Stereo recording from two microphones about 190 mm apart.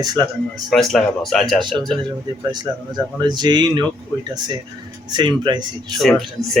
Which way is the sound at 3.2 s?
25° right (ahead or behind).